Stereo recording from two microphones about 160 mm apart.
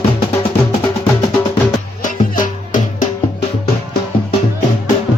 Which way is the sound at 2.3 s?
55° left (ahead or behind).